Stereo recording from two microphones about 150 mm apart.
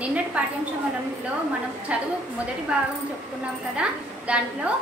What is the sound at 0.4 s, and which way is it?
Speech, 10° right (ahead or behind).